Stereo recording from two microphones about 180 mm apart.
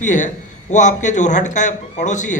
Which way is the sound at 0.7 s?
45° left (ahead or behind).